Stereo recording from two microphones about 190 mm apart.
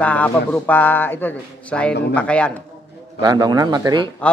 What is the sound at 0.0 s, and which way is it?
A man's voice, 5° left (ahead or behind).